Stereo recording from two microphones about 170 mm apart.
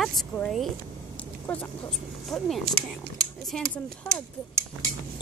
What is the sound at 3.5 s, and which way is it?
Speech, 5° left (ahead or behind).